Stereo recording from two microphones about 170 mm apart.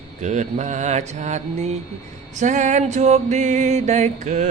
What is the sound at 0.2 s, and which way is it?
Music, 45° right (ahead or behind).